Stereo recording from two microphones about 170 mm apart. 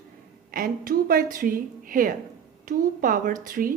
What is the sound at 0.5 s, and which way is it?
A woman's voice, 55° right (ahead or behind).